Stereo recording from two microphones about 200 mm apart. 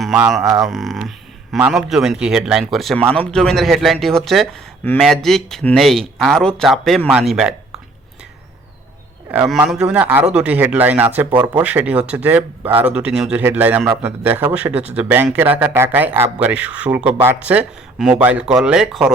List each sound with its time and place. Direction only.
0.0 s speech: centre (ahead or behind)
9.3 s a man's voice: 5° right (ahead or behind)
11.3 s speech: 20° right (ahead or behind)
11.5 s a man's voice: 5° right (ahead or behind)